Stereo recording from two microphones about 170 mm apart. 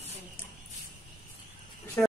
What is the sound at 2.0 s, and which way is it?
Speech, 10° left (ahead or behind).